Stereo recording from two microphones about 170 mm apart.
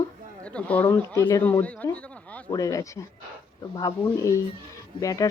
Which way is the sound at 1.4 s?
10° left (ahead or behind).